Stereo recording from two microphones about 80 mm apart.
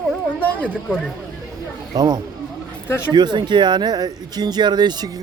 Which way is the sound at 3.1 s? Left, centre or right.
Right.